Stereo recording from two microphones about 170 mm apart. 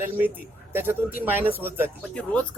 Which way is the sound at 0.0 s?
10° right (ahead or behind).